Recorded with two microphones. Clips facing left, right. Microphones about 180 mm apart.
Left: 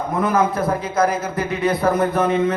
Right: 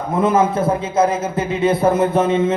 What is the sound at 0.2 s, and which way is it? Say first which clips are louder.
A man's voice: right 3 dB; 25° right (ahead or behind).